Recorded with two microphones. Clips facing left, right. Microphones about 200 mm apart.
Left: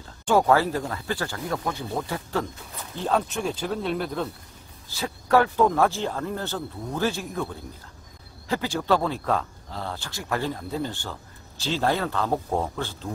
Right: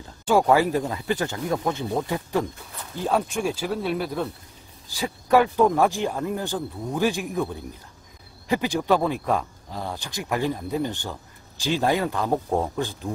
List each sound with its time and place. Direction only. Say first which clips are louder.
0.2 s speech: right 1 dB; 10° right (ahead or behind)